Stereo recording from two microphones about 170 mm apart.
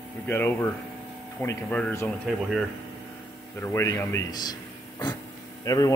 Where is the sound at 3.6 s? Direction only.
15° left (ahead or behind).